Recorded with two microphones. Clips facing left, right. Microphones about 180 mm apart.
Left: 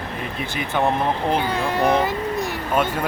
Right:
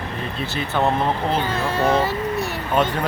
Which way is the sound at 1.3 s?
15° left (ahead or behind).